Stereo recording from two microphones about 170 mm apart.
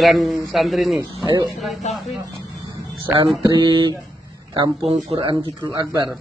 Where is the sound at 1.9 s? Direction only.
40° left (ahead or behind).